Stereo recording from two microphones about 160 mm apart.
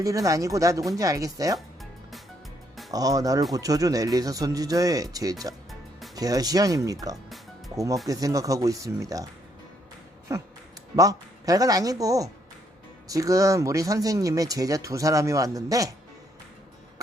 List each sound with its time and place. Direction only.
0.0 s speech: 20° right (ahead or behind)
1.5 s music: centre (ahead or behind)
2.9 s speech: 20° right (ahead or behind)
10.3 s speech: 20° right (ahead or behind)